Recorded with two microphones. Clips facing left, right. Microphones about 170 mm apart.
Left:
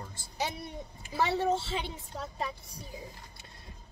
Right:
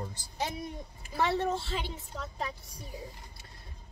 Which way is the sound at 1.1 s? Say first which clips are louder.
Left 1 dB; centre (ahead or behind).